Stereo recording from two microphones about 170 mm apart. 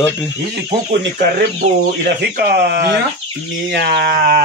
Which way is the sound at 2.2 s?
70° right (ahead or behind).